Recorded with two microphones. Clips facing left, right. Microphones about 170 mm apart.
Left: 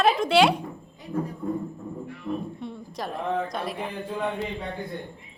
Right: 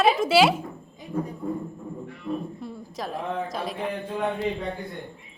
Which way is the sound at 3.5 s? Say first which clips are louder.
Even; centre (ahead or behind).